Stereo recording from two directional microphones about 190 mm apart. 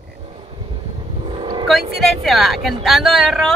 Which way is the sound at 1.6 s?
Centre (ahead or behind).